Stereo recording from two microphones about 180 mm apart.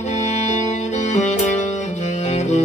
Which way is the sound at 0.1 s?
40° left (ahead or behind).